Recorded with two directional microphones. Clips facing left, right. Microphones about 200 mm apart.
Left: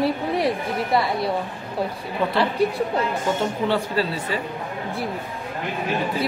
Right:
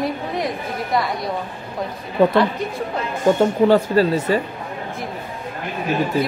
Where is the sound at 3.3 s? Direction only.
50° right (ahead or behind).